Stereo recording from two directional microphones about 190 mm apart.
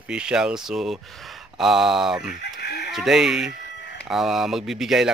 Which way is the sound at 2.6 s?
60° left (ahead or behind).